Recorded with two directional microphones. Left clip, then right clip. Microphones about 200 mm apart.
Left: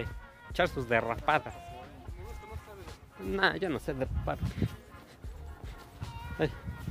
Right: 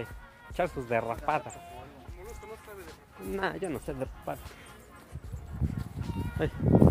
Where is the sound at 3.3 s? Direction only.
25° left (ahead or behind).